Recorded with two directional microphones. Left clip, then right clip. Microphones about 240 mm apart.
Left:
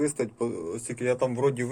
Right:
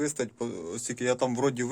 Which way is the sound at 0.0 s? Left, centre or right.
Centre.